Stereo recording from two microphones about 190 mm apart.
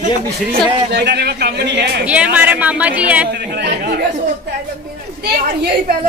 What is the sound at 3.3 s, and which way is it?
Speech, 60° right (ahead or behind).